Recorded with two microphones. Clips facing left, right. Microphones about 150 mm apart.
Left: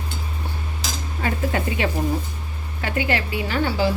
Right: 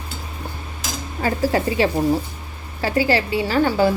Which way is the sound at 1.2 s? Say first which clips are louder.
Right 5 dB; 35° right (ahead or behind).